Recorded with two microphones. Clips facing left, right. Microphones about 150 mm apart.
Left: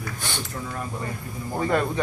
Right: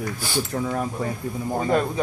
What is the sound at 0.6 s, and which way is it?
Speech, 70° right (ahead or behind).